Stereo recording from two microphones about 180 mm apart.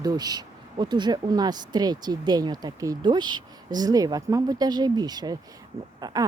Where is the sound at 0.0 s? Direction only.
20° right (ahead or behind).